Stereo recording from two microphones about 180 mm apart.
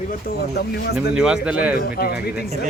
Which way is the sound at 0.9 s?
5° right (ahead or behind).